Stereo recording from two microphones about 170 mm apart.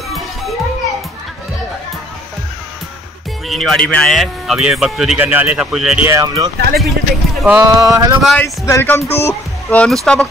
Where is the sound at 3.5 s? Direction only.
Centre (ahead or behind).